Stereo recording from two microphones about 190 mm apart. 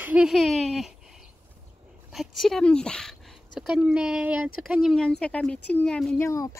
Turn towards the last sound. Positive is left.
turn(degrees=5)  # may be behind; listen again after turning